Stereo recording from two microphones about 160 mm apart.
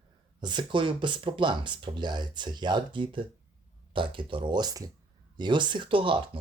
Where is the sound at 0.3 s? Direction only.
30° right (ahead or behind).